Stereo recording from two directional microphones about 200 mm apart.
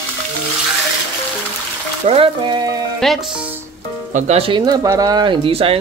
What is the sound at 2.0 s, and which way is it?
Speech, 30° right (ahead or behind).